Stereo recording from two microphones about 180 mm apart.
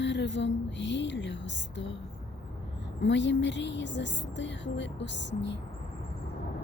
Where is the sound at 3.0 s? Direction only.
85° left.